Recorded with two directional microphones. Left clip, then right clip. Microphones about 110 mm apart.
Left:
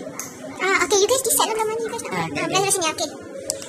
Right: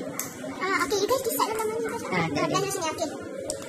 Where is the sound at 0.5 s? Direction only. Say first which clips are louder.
Left 7 dB; 25° left (ahead or behind).